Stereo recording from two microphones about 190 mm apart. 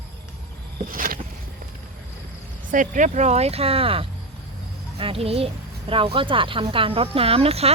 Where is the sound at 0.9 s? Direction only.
45° right (ahead or behind).